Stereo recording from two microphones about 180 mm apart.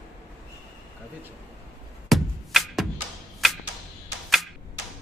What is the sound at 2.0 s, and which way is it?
Music, centre (ahead or behind).